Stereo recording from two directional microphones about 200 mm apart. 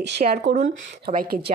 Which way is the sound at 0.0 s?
50° right (ahead or behind).